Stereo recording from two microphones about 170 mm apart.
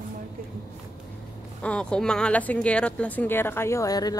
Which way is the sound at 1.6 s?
5° left (ahead or behind).